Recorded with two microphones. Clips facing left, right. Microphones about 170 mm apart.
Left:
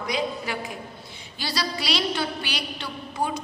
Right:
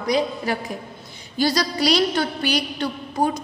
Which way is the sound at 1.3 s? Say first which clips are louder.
Right 9 dB; 45° right (ahead or behind).